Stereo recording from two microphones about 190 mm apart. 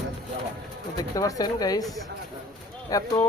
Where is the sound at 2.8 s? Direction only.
20° left (ahead or behind).